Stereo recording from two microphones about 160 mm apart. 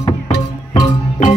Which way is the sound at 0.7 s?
25° left (ahead or behind).